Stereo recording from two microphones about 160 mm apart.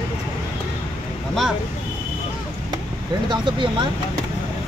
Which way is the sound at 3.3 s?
30° right (ahead or behind).